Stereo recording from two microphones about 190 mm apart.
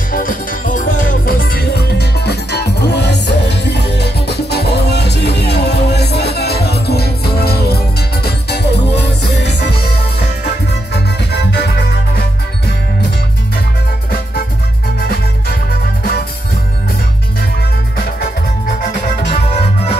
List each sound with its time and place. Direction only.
0.1 s music: 45° left (ahead or behind); by 9.3 s 60° left (ahead or behind)
10.4 s music: 65° left (ahead or behind)
16.0 s music: 55° left (ahead or behind)